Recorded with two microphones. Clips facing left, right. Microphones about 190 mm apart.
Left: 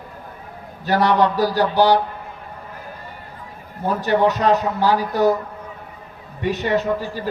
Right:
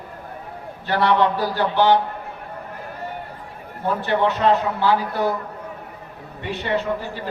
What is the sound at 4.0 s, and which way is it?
Speech, 40° left (ahead or behind).